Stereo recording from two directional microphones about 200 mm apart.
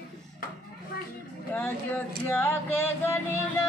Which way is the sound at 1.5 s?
10° left (ahead or behind).